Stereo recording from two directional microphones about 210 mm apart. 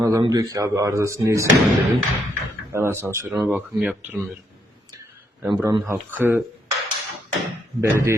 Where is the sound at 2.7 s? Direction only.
10° right (ahead or behind).